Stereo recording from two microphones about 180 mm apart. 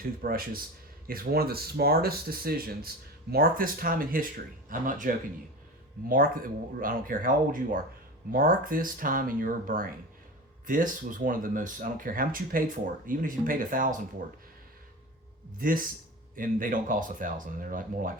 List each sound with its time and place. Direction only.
0.2 s speech: 55° right (ahead or behind)
15.5 s speech: 50° right (ahead or behind)